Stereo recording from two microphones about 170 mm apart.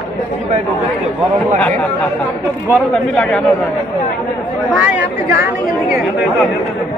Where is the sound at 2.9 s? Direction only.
5° left (ahead or behind).